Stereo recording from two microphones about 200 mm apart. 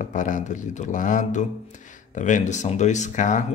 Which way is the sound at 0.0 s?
40° left (ahead or behind).